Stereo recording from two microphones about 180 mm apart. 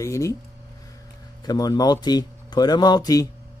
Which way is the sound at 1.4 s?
20° left (ahead or behind).